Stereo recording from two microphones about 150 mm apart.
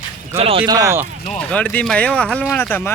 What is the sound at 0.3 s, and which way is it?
Speech, 40° right (ahead or behind).